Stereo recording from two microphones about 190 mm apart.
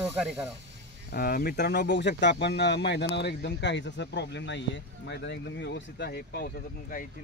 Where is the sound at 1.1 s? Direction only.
55° left (ahead or behind).